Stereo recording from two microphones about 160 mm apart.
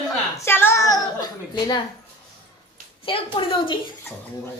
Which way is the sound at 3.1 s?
30° left (ahead or behind).